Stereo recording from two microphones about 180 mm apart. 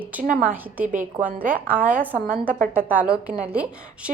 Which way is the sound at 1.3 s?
55° right (ahead or behind).